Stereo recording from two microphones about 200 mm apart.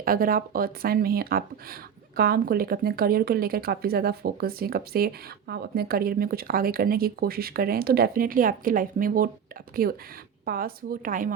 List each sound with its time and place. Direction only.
0.0 s speech: 45° right (ahead or behind)